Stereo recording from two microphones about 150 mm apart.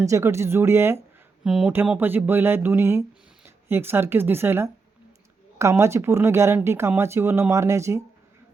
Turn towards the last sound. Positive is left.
turn(degrees=-20)  # may be behind; listen again after turning